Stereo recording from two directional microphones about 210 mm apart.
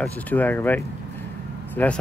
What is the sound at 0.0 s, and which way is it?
Speech, 10° left (ahead or behind).